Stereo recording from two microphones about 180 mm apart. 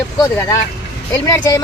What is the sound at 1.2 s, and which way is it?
Speech, 20° left (ahead or behind).